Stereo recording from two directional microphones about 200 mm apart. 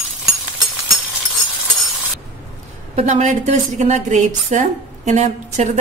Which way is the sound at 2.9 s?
35° right (ahead or behind).